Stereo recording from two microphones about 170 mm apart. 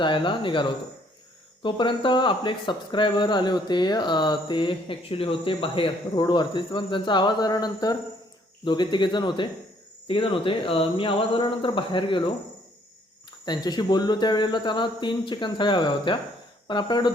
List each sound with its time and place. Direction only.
0.0 s speech: 30° left (ahead or behind)
13.4 s speech: 25° left (ahead or behind)